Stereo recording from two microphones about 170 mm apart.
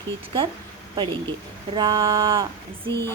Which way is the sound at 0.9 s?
30° right (ahead or behind).